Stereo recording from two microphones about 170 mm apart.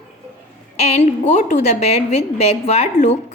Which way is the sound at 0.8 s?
40° left (ahead or behind).